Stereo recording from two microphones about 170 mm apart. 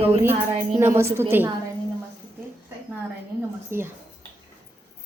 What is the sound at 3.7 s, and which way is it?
Speech, 15° right (ahead or behind).